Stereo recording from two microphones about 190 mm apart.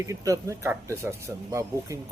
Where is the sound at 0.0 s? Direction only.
15° right (ahead or behind).